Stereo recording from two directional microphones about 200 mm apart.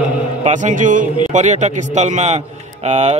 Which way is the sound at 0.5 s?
40° right (ahead or behind).